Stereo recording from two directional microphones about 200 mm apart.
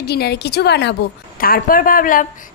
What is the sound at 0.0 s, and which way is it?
Speech, 55° left (ahead or behind).